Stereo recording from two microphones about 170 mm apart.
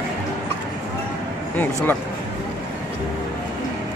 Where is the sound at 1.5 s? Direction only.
10° left (ahead or behind).